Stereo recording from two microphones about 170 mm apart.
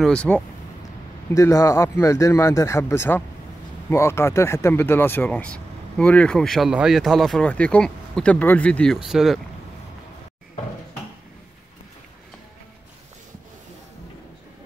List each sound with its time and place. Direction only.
0.0 s speech: 5° left (ahead or behind)
1.3 s speech: 20° left (ahead or behind); by 9.4 s centre (ahead or behind)